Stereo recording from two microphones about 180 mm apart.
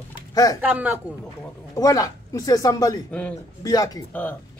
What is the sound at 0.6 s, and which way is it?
Speech, 10° right (ahead or behind).